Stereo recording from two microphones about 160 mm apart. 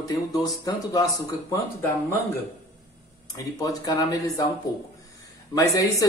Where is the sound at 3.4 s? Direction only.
25° left (ahead or behind).